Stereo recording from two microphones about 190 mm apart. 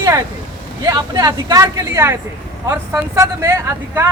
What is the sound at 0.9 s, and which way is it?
Speech, 20° right (ahead or behind).